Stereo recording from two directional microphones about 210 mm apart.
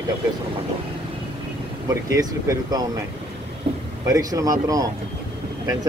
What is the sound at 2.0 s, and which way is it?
Speech, 15° right (ahead or behind).